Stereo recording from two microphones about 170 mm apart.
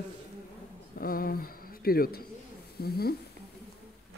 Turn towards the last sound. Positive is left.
turn(degrees=65)  # may be behind; listen again after turning